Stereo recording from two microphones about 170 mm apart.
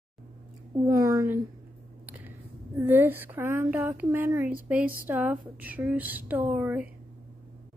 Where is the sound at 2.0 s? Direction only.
10° right (ahead or behind).